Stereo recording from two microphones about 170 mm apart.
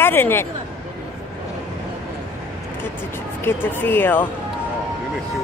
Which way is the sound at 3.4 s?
10° left (ahead or behind).